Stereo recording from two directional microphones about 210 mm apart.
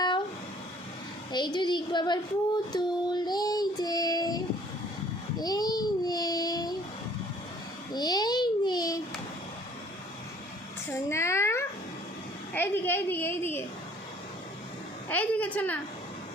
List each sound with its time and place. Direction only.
1.3 s a sound: 20° left (ahead or behind)
2.7 s child singing: 20° left (ahead or behind)
7.9 s babbling: 20° left (ahead or behind)
10.8 s a sound: 15° left (ahead or behind)
12.5 s a woman's voice: 10° left (ahead or behind)
15.1 s a woman's voice: 5° left (ahead or behind)